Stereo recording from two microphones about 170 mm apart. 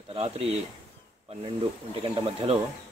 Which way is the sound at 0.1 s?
35° right (ahead or behind).